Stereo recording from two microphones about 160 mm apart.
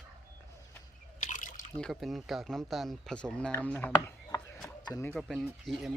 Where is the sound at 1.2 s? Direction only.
55° left (ahead or behind).